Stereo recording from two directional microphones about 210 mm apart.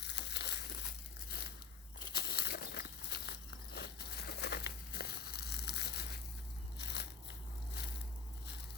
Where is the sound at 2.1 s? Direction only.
50° left (ahead or behind).